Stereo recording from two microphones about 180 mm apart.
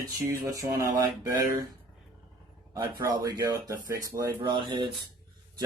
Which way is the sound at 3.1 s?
20° right (ahead or behind).